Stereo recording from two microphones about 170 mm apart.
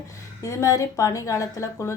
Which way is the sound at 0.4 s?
20° left (ahead or behind).